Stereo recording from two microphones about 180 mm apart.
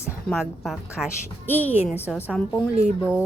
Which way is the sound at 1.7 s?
35° left (ahead or behind).